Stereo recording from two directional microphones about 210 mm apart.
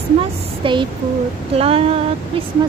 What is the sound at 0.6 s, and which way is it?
Female singing, 25° right (ahead or behind).